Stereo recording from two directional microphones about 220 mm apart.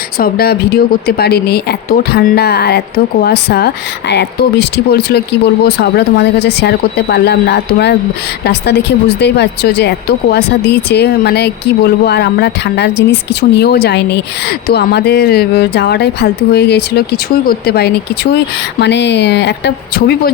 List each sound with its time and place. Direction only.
0.2 s speech: 45° left (ahead or behind)
4.9 s speech: 45° left (ahead or behind)